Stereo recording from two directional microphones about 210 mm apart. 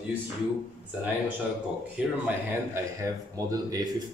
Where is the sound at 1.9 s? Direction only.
10° right (ahead or behind).